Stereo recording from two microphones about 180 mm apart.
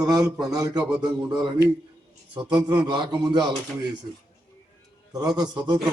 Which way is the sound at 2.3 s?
20° right (ahead or behind).